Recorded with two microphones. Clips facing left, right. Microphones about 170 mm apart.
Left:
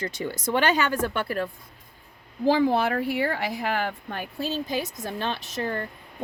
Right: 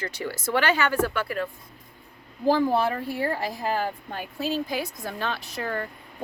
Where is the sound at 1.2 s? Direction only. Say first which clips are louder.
Left 1 dB; 40° left (ahead or behind).